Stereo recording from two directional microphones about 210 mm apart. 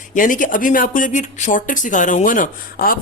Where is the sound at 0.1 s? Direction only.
40° left (ahead or behind).